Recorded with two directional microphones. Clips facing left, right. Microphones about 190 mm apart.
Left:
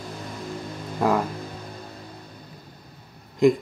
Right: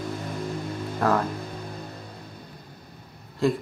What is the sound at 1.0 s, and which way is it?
Speech, 10° left (ahead or behind).